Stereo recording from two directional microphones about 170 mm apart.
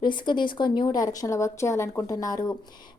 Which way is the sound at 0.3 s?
25° left (ahead or behind).